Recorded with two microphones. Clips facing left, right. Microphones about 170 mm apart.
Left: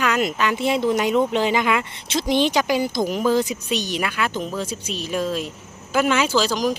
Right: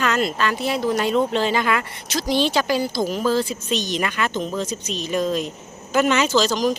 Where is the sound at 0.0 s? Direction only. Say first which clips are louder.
Even; 10° left (ahead or behind).